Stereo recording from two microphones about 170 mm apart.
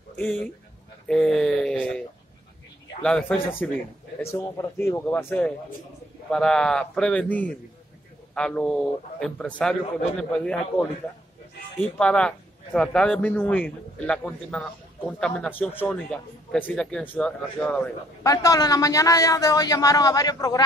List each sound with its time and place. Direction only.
0.2 s a man's voice: 10° left (ahead or behind)
11.8 s a man's voice: 5° left (ahead or behind)
18.2 s a man's voice: 20° left (ahead or behind)